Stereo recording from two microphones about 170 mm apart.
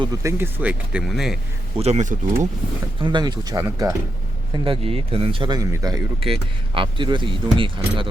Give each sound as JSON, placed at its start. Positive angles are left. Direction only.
{"t": 0.0, "sound": "speech", "side_deg": -15}
{"t": 1.8, "sound": "speech", "side_deg": -40}
{"t": 3.0, "sound": "speech", "side_deg": -25}
{"t": 4.5, "sound": "speech", "side_deg": -30}
{"t": 6.1, "sound": "speech", "side_deg": -30}